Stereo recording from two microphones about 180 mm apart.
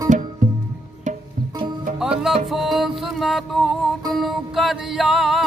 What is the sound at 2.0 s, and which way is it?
Music, 5° right (ahead or behind).